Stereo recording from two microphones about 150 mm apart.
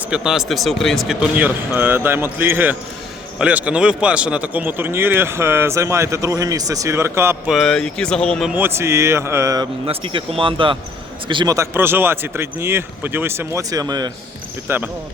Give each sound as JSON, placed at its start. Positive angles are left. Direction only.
{"t": 0.1, "sound": "speech", "side_deg": -5}
{"t": 1.4, "sound": "a man's voice", "side_deg": -10}
{"t": 7.5, "sound": "speech", "side_deg": 5}
{"t": 8.4, "sound": "a man's voice", "side_deg": -15}
{"t": 9.8, "sound": "speech", "side_deg": -35}
{"t": 11.5, "sound": "a man's voice", "side_deg": -15}
{"t": 14.7, "sound": "a man's voice", "side_deg": -15}